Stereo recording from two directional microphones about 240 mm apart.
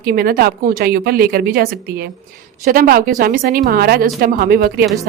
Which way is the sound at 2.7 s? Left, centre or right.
Right.